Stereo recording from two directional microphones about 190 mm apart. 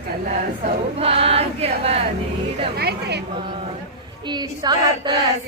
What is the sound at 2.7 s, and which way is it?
Speech, 55° right (ahead or behind).